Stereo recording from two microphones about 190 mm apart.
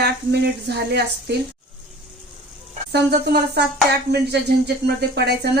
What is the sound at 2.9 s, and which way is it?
A woman's voice, 60° right (ahead or behind).